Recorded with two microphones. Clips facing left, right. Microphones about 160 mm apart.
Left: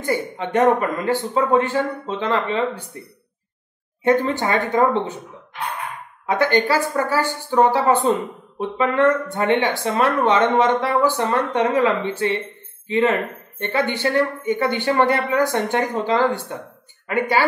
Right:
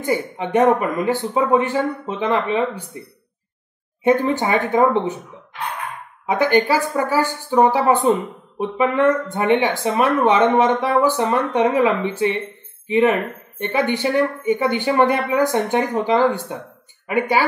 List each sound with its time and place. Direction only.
0.0 s a woman's voice: 15° right (ahead or behind)
4.0 s a woman's voice: 15° right (ahead or behind)
6.2 s a woman's voice: 15° right (ahead or behind)